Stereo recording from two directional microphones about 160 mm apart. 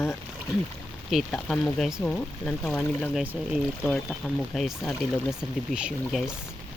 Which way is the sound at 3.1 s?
5° right (ahead or behind).